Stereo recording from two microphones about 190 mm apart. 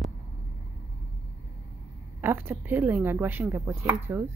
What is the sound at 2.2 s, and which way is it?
Speech, 10° right (ahead or behind).